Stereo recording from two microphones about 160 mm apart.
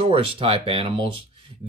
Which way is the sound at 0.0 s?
35° right (ahead or behind).